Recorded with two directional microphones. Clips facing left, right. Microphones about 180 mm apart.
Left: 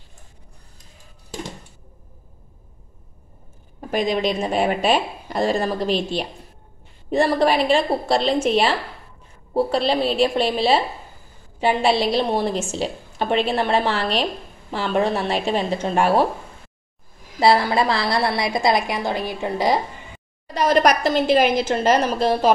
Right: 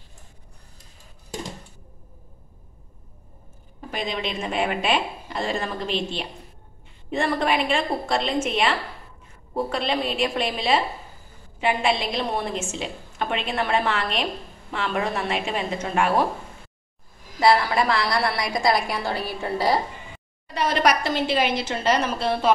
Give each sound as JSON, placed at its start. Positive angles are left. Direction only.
{"t": 3.9, "sound": "a woman's voice", "side_deg": 45}
{"t": 17.4, "sound": "a woman's voice", "side_deg": 30}
{"t": 20.4, "sound": "a woman's voice", "side_deg": 40}